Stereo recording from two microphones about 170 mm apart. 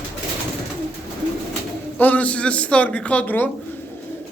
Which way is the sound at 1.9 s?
10° left (ahead or behind).